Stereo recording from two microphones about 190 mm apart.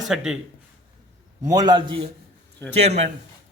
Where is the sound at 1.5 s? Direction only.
20° right (ahead or behind).